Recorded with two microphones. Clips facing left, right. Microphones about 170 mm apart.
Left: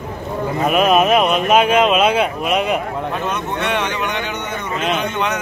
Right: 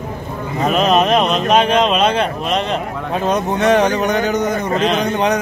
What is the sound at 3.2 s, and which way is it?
A man's voice, 35° right (ahead or behind).